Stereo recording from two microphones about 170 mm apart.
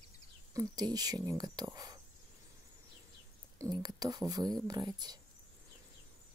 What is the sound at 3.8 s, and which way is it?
Speech, 20° right (ahead or behind).